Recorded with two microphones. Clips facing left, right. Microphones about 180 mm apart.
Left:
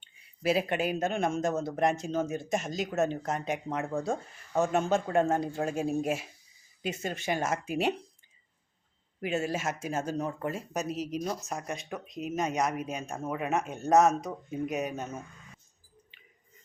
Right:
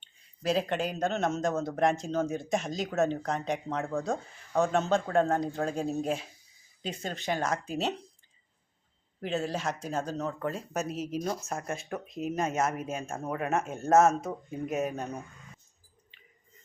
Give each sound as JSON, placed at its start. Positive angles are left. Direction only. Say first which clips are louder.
{"t": 0.0, "sound": "speech", "louder": "left 2 dB", "side_deg": 10}
{"t": 9.2, "sound": "speech", "louder": "left 1 dB", "side_deg": 5}